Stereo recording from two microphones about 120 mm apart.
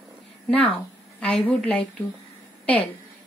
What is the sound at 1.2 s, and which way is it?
Speech, 10° left (ahead or behind).